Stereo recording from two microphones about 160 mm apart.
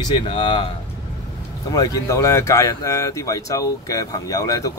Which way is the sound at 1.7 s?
25° left (ahead or behind).